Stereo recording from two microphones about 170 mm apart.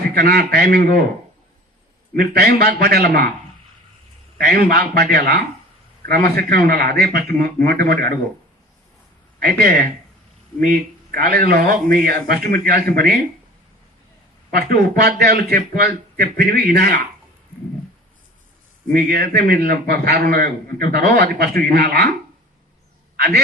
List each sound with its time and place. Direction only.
0.1 s speech: 70° right (ahead or behind)
2.1 s speech: 70° right (ahead or behind)
4.4 s speech: 65° right (ahead or behind)
9.4 s speech: 65° right (ahead or behind)
14.5 s speech: 70° right (ahead or behind)
18.9 s speech: 60° right (ahead or behind)
23.1 s a man's voice: 70° right (ahead or behind)